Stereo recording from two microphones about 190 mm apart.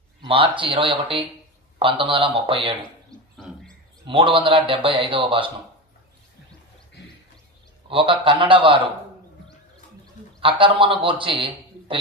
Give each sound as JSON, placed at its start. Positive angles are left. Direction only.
{"t": 0.2, "sound": "a man's voice", "side_deg": -25}
{"t": 3.1, "sound": "bird", "side_deg": 5}
{"t": 4.0, "sound": "a man's voice", "side_deg": -25}
{"t": 7.9, "sound": "a man's voice", "side_deg": -25}
{"t": 10.4, "sound": "a man's voice", "side_deg": -25}